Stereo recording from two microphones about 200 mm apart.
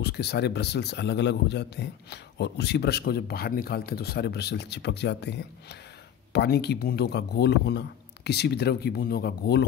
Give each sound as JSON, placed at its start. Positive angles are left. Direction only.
{"t": 0.0, "sound": "a man's voice", "side_deg": 55}